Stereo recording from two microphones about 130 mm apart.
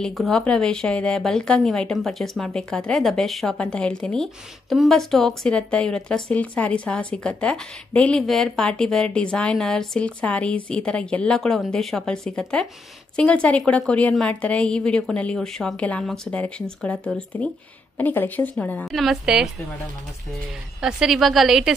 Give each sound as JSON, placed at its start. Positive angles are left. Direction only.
{"t": 0.0, "sound": "a woman's voice", "side_deg": 5}
{"t": 18.9, "sound": "a woman's voice", "side_deg": 0}
{"t": 20.8, "sound": "a woman's voice", "side_deg": -5}